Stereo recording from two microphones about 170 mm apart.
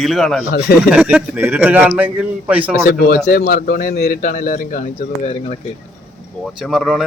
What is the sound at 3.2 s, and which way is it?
A man's voice, 65° left (ahead or behind).